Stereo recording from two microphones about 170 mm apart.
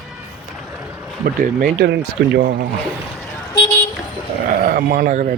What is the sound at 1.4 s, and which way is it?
Speech, 65° right (ahead or behind).